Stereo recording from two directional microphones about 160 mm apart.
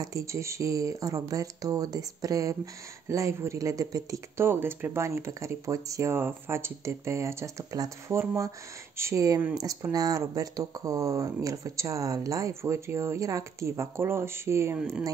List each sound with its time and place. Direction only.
0.0 s speech: 20° right (ahead or behind)
14.8 s speech: 5° right (ahead or behind)